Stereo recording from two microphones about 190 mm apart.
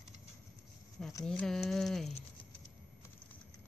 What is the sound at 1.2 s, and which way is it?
Speech, 5° left (ahead or behind).